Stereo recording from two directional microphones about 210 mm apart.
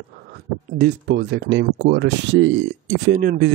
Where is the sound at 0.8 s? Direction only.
55° right (ahead or behind).